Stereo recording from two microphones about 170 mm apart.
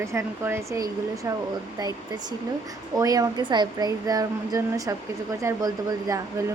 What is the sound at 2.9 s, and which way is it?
Speech, 20° right (ahead or behind).